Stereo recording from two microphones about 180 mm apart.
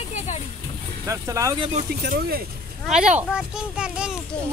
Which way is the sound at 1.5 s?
30° right (ahead or behind).